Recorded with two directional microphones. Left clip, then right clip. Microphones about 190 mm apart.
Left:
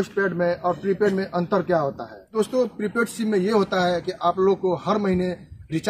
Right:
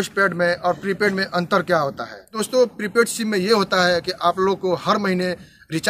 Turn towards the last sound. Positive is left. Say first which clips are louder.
# right 4 dB
turn(degrees=-15)  # may be behind; listen again after turning